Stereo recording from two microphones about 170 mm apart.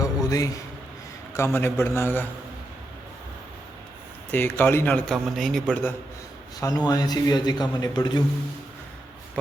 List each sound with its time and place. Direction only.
0.0 s a sound: 20° left (ahead or behind)
1.3 s a man's voice: 15° left (ahead or behind)
4.3 s a man's voice: 10° left (ahead or behind)
6.6 s a man's voice: 20° left (ahead or behind)